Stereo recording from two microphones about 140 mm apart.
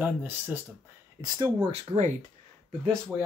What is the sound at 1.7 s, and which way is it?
Speech, 55° right (ahead or behind).